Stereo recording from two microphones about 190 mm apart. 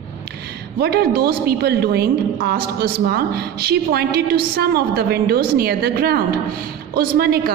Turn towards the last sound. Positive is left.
turn(degrees=-55)  # may be behind; listen again after turning